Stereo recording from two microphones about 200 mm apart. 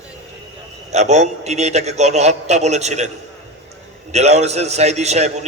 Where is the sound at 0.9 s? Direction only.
35° right (ahead or behind).